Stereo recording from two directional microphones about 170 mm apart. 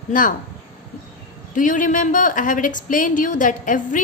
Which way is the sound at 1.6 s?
50° left (ahead or behind).